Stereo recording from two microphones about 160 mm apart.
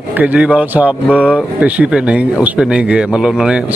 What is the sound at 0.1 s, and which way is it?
Speech, 10° right (ahead or behind).